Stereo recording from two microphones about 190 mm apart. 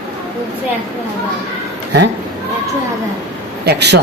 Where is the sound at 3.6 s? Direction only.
60° right (ahead or behind).